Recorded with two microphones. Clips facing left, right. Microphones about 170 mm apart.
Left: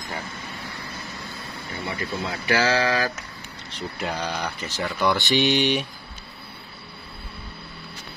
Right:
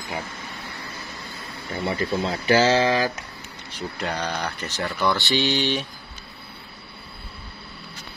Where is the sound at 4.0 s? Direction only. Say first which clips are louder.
Even; 5° left (ahead or behind).